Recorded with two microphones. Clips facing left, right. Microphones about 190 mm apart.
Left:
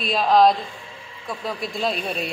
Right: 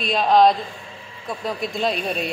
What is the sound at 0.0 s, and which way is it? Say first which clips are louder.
A woman's voice: right 1 dB; centre (ahead or behind).